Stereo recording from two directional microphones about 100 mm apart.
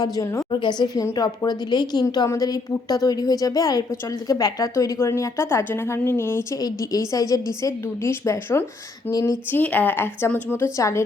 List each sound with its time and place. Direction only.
0.0 s a woman's voice: 35° left (ahead or behind)
0.6 s a woman's voice: 45° left (ahead or behind)
1.0 s a woman's voice: 35° left (ahead or behind)
6.6 s a woman's voice: 40° left (ahead or behind)
9.5 s a woman's voice: 20° left (ahead or behind)
10.8 s a woman's voice: 30° left (ahead or behind)